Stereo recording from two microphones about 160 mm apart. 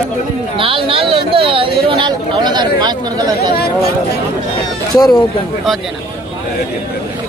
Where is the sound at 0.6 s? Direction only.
35° right (ahead or behind).